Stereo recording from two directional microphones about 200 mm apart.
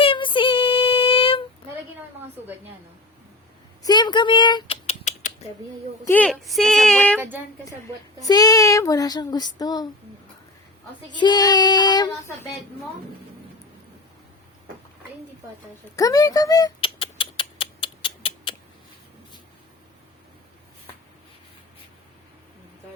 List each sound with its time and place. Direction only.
0.0 s a sound: 25° left (ahead or behind)
3.8 s speech: 20° left (ahead or behind)
6.1 s speech: 5° left (ahead or behind)
7.2 s speech: 10° right (ahead or behind)
8.2 s child singing: 20° left (ahead or behind)
11.1 s child singing: 20° left (ahead or behind)
16.0 s rodents: 15° left (ahead or behind)